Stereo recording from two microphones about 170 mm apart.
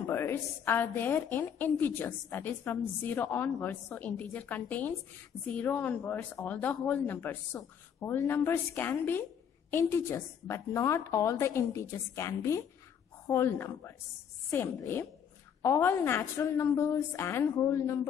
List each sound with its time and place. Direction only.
0.0 s a woman's voice: 15° left (ahead or behind)